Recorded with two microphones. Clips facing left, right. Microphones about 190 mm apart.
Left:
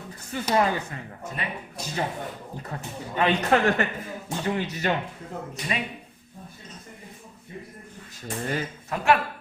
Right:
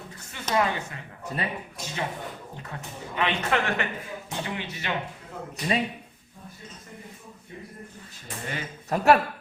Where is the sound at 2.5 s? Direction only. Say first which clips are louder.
Left 3 dB; 35° left (ahead or behind).